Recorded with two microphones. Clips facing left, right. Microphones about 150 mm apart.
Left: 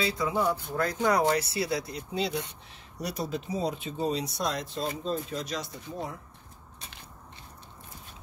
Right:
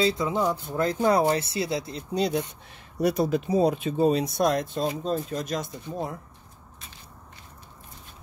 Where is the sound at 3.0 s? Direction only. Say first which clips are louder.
Right 10 dB; 55° right (ahead or behind).